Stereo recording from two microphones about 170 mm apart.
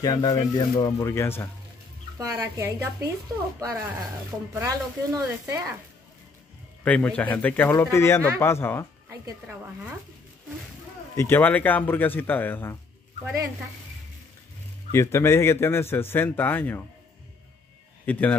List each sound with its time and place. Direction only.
0.0 s a man's voice: 20° left (ahead or behind)
2.1 s a woman's voice: 20° right (ahead or behind)
4.6 s speech: 15° right (ahead or behind)
6.8 s a man's voice: 10° left (ahead or behind)
9.5 s a woman's voice: 15° right (ahead or behind)
11.1 s a man's voice: 15° left (ahead or behind)
14.9 s a man's voice: 15° left (ahead or behind)
18.1 s a man's voice: 10° left (ahead or behind)